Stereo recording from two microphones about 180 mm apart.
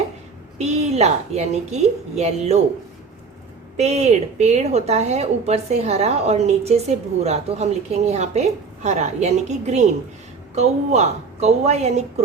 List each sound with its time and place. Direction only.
0.6 s a woman's voice: 35° right (ahead or behind)
3.8 s a woman's voice: 40° right (ahead or behind)